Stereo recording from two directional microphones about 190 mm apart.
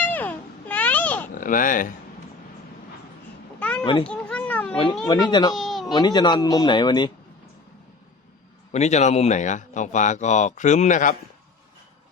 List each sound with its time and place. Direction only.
0.0 s babbling: 10° left (ahead or behind)
1.3 s speech: 45° left (ahead or behind)
3.6 s children playing: 5° left (ahead or behind)
3.8 s speech: 25° left (ahead or behind)
4.1 s a sound: 5° left (ahead or behind)
5.0 s speech: 20° left (ahead or behind)
5.5 s a sound: centre (ahead or behind)
5.8 s speech: 20° left (ahead or behind)
8.7 s speech: 35° left (ahead or behind)